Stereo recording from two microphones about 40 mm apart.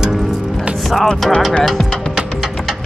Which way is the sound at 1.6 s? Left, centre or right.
Centre.